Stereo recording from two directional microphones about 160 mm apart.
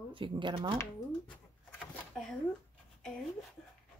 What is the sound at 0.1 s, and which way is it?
Speech, 30° right (ahead or behind).